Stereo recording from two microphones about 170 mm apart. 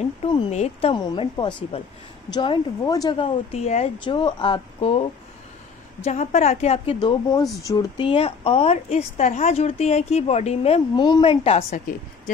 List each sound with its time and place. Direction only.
0.2 s speech: 40° left (ahead or behind)
6.0 s speech: 40° left (ahead or behind)
11.0 s speech: 25° left (ahead or behind)